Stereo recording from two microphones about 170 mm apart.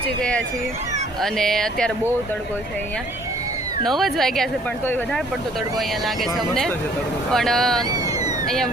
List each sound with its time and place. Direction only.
0.2 s speech: 5° left (ahead or behind)
3.8 s speech: centre (ahead or behind)
6.1 s speech: centre (ahead or behind)
7.9 s speech: 20° right (ahead or behind)
8.4 s speech: centre (ahead or behind)